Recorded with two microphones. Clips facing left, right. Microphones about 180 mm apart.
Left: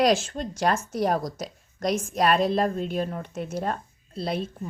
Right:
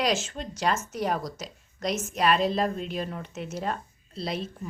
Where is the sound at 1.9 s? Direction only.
30° left (ahead or behind).